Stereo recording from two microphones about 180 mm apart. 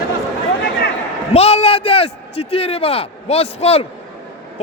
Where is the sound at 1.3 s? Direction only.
35° left (ahead or behind).